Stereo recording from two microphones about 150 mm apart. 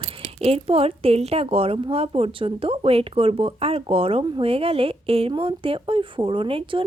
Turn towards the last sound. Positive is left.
turn(degrees=-35)  # may be behind; listen again after turning